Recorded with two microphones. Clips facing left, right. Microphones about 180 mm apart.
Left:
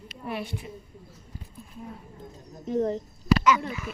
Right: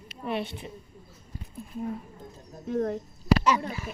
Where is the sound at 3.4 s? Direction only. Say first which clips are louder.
Left 2 dB; 30° right (ahead or behind).